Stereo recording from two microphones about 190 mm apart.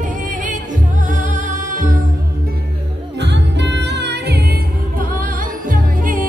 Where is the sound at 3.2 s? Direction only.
65° right (ahead or behind).